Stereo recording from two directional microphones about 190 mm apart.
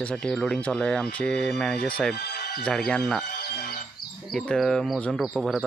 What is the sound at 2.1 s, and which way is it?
Music, 60° left (ahead or behind).